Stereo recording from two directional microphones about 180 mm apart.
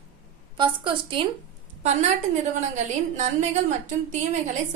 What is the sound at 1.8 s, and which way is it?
A woman's voice, 40° right (ahead or behind).